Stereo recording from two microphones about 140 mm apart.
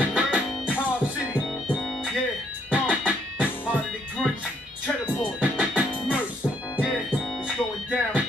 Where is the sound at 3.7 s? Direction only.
5° left (ahead or behind).